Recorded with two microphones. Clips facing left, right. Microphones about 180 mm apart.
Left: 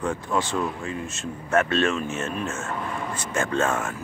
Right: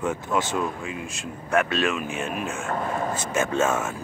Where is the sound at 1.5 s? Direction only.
Centre (ahead or behind).